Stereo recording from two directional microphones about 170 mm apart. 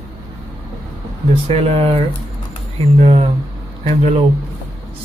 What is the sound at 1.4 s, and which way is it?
Speech, 35° right (ahead or behind).